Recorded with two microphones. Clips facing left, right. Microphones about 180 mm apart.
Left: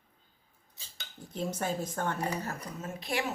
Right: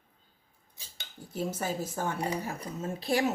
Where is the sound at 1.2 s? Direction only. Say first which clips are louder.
Right 1 dB; 5° right (ahead or behind).